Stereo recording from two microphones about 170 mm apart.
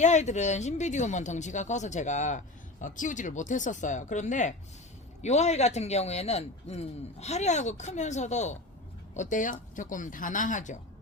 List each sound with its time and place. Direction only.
0.0 s a man's voice: 45° left (ahead or behind)